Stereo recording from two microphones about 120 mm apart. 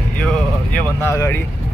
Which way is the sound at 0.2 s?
5° left (ahead or behind).